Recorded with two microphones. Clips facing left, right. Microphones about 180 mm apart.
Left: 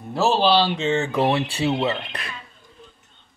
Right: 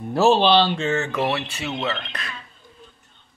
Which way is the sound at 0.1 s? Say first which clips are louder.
Right 2 dB; centre (ahead or behind).